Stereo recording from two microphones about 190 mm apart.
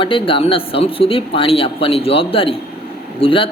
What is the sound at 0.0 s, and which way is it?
Speech, 25° left (ahead or behind).